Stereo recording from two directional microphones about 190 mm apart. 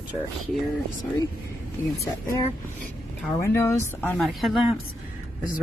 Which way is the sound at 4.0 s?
5° left (ahead or behind).